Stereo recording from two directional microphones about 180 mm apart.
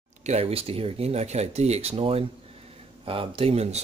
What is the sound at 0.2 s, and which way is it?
Speech, 35° right (ahead or behind).